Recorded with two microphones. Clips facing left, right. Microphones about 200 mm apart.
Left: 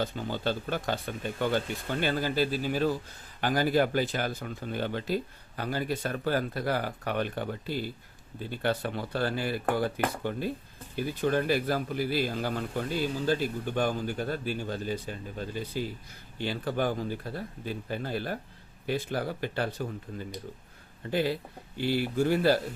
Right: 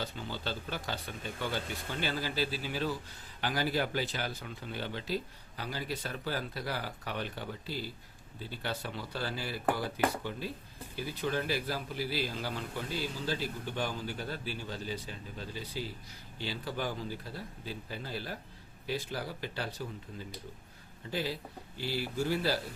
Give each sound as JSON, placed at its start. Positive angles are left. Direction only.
{"t": 0.0, "sound": "a man's voice", "side_deg": 50}